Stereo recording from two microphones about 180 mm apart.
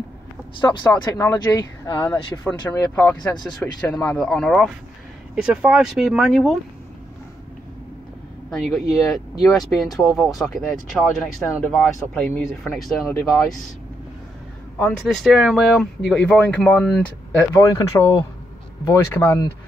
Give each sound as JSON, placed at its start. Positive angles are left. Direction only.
{"t": 0.6, "sound": "speech", "side_deg": 25}
{"t": 8.5, "sound": "speech", "side_deg": 0}
{"t": 14.8, "sound": "speech", "side_deg": 5}
{"t": 17.4, "sound": "speech", "side_deg": 20}